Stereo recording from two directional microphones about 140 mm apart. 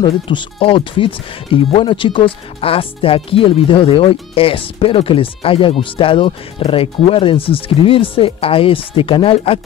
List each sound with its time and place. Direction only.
0.0 s speech: 35° left (ahead or behind)